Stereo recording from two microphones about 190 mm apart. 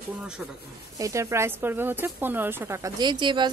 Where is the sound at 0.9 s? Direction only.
15° right (ahead or behind).